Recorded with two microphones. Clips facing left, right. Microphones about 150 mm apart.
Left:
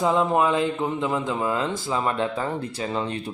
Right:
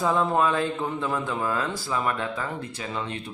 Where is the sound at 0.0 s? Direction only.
15° left (ahead or behind).